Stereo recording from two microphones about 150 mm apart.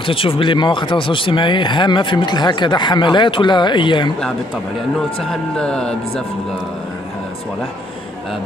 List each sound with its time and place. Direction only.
0.0 s speech: 35° left (ahead or behind)
5.2 s speech: 5° left (ahead or behind)